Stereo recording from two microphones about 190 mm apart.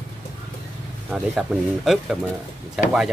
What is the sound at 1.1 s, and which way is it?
Speech, centre (ahead or behind).